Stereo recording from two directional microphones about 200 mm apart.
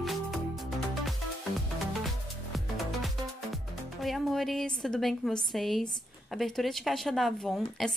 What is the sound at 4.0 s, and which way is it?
A woman's voice, centre (ahead or behind).